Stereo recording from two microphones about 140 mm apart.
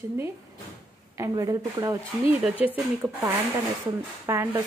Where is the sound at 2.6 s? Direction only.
10° right (ahead or behind).